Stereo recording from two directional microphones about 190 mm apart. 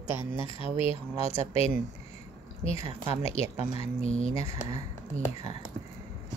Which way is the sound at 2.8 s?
15° right (ahead or behind).